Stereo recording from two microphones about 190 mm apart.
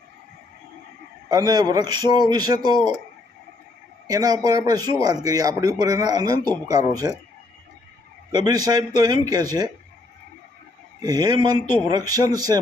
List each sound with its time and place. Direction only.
1.3 s a man's voice: 20° right (ahead or behind)
4.0 s a man's voice: 20° right (ahead or behind)
8.3 s a man's voice: 20° right (ahead or behind)
11.0 s a man's voice: 20° right (ahead or behind)